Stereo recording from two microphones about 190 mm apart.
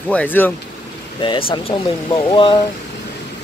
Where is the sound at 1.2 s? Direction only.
30° left (ahead or behind).